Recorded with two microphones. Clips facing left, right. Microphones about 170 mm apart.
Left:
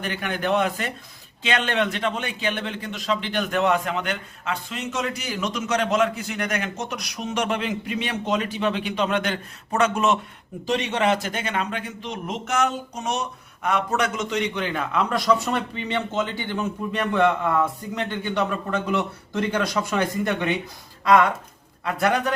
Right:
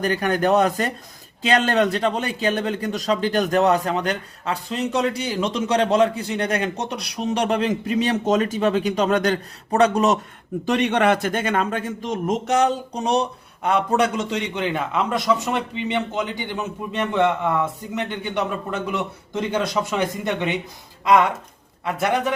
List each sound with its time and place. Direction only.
0.0 s a man's voice: 40° right (ahead or behind)
10.7 s a man's voice: 60° right (ahead or behind); by 22.2 s 20° right (ahead or behind)